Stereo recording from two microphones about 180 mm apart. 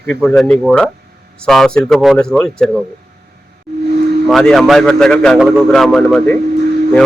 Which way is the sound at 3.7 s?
70° right (ahead or behind).